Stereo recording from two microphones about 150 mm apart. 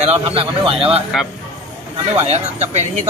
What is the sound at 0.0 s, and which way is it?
Speech, 40° right (ahead or behind).